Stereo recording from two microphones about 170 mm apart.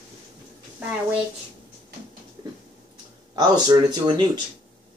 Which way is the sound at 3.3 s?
25° right (ahead or behind).